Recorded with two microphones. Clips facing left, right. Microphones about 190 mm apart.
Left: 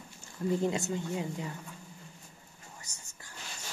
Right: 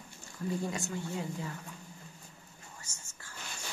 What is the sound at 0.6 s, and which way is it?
Speech, 20° left (ahead or behind).